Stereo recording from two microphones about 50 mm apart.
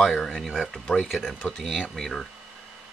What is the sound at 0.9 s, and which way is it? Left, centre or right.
Speech, centre.